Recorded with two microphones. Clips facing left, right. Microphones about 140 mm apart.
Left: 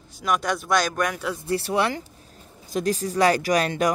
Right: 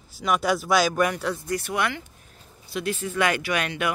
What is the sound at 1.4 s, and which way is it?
Speech, 30° left (ahead or behind).